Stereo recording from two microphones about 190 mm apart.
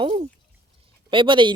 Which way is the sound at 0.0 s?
30° right (ahead or behind).